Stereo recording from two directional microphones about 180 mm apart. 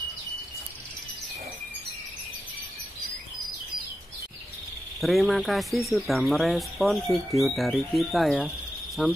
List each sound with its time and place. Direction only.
5.0 s speech: centre (ahead or behind)